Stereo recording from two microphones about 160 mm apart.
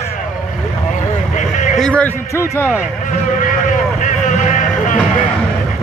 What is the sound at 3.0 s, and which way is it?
Vehicle, 55° left (ahead or behind).